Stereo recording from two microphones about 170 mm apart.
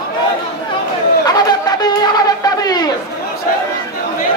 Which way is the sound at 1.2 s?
25° left (ahead or behind).